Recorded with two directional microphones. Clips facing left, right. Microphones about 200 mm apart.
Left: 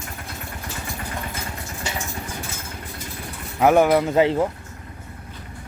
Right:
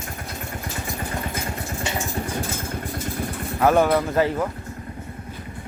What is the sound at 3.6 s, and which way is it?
Speech, 15° left (ahead or behind).